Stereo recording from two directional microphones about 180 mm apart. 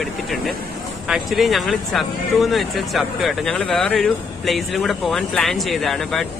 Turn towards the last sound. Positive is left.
turn(degrees=0)  # may be behind; listen again after turning